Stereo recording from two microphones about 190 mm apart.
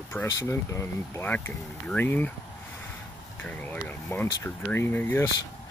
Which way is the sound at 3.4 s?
10° left (ahead or behind).